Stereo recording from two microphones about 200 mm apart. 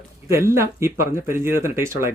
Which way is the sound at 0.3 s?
15° right (ahead or behind).